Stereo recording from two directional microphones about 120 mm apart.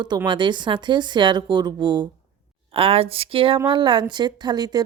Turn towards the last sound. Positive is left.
turn(degrees=-35)  # may be behind; listen again after turning